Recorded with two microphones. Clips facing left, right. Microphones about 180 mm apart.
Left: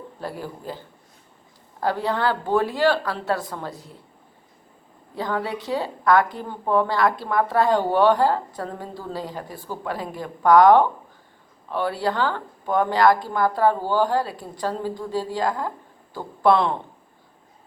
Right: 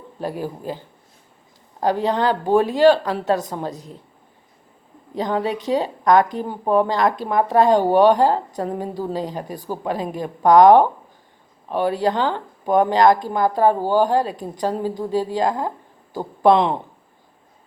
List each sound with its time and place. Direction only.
0.2 s speech: 15° right (ahead or behind)
1.8 s speech: 15° right (ahead or behind)
5.1 s speech: 20° right (ahead or behind)